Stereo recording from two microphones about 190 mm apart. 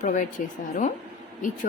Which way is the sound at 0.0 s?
40° left (ahead or behind).